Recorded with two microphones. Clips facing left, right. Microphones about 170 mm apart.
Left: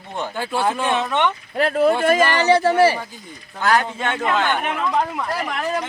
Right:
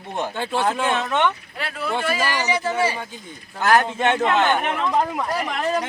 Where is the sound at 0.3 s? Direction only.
10° left (ahead or behind).